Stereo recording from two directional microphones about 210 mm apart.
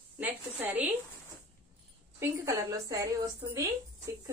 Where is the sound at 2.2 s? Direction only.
15° right (ahead or behind).